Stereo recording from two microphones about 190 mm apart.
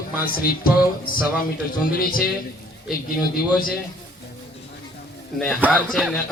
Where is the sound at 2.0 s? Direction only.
50° left (ahead or behind).